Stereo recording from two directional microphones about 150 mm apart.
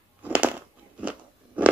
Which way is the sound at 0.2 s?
10° right (ahead or behind).